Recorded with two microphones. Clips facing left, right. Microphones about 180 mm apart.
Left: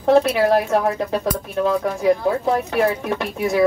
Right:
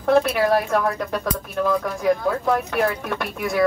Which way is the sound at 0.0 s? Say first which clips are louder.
Left 3 dB; 25° left (ahead or behind).